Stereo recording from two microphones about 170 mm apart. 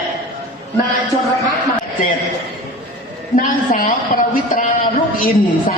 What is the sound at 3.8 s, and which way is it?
Speech, 55° left (ahead or behind).